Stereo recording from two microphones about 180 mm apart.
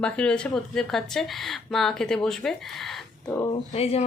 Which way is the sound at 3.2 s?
20° left (ahead or behind).